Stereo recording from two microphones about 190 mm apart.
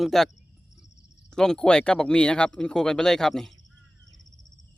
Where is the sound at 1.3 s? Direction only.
5° left (ahead or behind).